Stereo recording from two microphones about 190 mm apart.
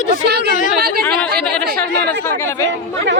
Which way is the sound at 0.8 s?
55° right (ahead or behind).